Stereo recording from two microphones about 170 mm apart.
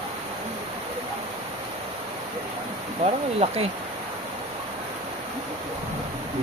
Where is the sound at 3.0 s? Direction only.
35° right (ahead or behind).